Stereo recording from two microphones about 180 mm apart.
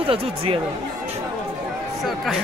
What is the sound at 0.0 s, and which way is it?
Speech, 30° right (ahead or behind).